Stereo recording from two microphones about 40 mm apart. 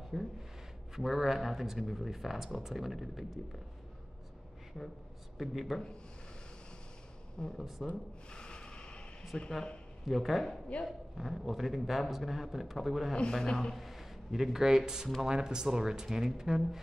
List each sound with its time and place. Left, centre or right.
0.1 s a man's voice: centre
5.4 s a man's voice: centre
7.4 s speech: left
7.8 s a man's voice: centre
8.3 s a sound: left
9.3 s a man's voice: centre
10.0 s a man's voice: centre
13.3 s a man's voice: centre
13.7 s a man's voice: centre